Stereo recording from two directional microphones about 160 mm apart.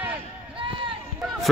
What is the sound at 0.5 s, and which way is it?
Run, 35° right (ahead or behind).